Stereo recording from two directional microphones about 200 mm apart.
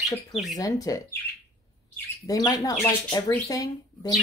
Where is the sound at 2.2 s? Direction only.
20° left (ahead or behind).